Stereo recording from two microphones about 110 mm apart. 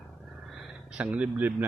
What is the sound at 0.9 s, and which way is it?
Speech, 10° right (ahead or behind).